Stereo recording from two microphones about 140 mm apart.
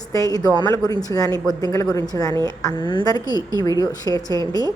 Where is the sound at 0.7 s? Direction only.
25° left (ahead or behind).